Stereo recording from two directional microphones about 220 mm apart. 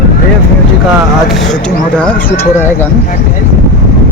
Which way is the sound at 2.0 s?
10° left (ahead or behind).